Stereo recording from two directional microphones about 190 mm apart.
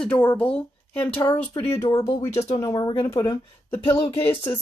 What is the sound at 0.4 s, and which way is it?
A woman's voice, 5° left (ahead or behind).